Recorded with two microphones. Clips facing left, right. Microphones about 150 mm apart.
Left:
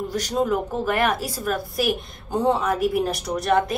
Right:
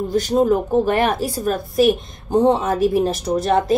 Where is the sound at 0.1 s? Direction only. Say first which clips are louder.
Right 7 dB; 25° right (ahead or behind).